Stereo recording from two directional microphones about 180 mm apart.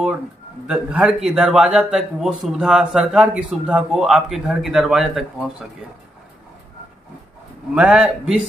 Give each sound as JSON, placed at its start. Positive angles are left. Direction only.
{"t": 0.7, "sound": "speech", "side_deg": -5}
{"t": 7.7, "sound": "speech", "side_deg": -5}